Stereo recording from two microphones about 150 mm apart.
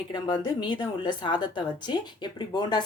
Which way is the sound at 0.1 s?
30° left (ahead or behind).